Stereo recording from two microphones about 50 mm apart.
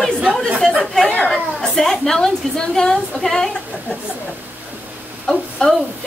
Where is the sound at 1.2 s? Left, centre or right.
Centre.